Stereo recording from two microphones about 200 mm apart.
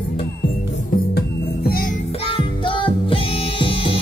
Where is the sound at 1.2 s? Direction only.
50° left (ahead or behind).